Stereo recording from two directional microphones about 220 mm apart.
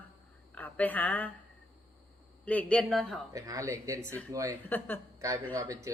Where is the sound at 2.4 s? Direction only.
5° left (ahead or behind).